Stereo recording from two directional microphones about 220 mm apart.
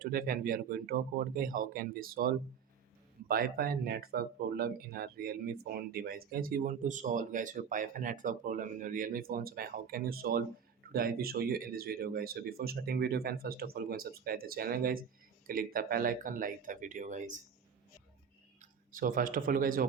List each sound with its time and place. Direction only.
0.0 s speech: 40° right (ahead or behind)
18.6 s speech: 40° right (ahead or behind)